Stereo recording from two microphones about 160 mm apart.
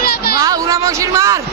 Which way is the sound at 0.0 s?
70° left (ahead or behind).